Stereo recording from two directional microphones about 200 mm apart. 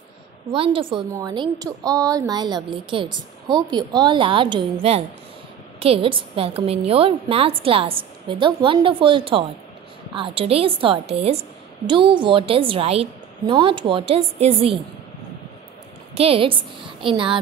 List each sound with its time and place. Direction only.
0.5 s a woman's voice: 25° right (ahead or behind)
16.2 s a woman's voice: 30° right (ahead or behind)